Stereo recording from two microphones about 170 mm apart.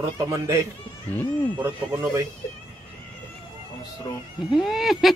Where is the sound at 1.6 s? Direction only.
15° right (ahead or behind).